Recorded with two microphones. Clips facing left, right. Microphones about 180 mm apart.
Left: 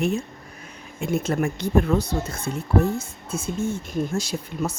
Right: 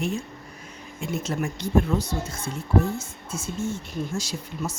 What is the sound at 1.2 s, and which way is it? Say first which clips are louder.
Speech: left 5 dB; 55° left (ahead or behind).